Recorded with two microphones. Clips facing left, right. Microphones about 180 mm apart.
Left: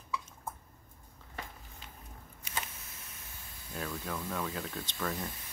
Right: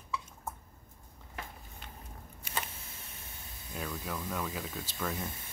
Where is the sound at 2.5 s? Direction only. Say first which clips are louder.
Right 2 dB; 55° right (ahead or behind).